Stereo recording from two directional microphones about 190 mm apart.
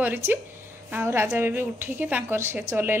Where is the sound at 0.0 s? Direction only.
10° right (ahead or behind).